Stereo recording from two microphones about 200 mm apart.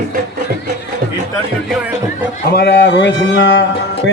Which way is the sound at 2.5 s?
55° left (ahead or behind).